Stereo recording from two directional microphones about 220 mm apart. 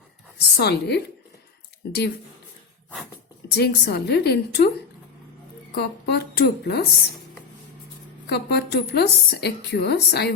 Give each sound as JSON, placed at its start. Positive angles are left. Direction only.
{"t": 0.3, "sound": "a woman's voice", "side_deg": 50}
{"t": 3.5, "sound": "a woman's voice", "side_deg": 45}
{"t": 5.7, "sound": "a woman's voice", "side_deg": 45}
{"t": 8.3, "sound": "a woman's voice", "side_deg": 50}